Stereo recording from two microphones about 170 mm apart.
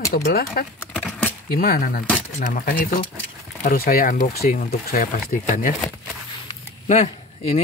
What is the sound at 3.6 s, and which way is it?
Speech, 60° left (ahead or behind).